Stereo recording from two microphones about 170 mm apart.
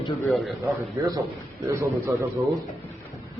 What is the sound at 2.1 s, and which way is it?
Speech, 15° right (ahead or behind).